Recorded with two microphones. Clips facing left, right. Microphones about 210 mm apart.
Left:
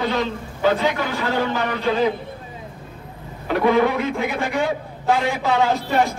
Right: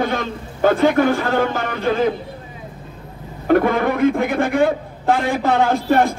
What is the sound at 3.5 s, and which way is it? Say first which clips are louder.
A man's voice: right 2 dB; 50° right (ahead or behind).